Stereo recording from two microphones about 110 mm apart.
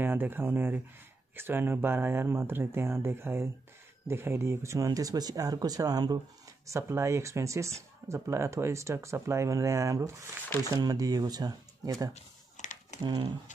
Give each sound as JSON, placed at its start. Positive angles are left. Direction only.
{"t": 0.0, "sound": "speech", "side_deg": -20}
{"t": 12.1, "sound": "a sound", "side_deg": 90}
{"t": 13.0, "sound": "speech", "side_deg": -40}